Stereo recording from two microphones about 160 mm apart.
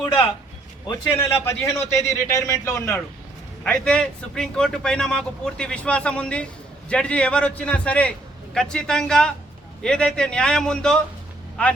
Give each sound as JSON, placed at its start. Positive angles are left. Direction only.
{"t": 0.9, "sound": "a man's voice", "side_deg": 15}
{"t": 3.6, "sound": "a man's voice", "side_deg": 5}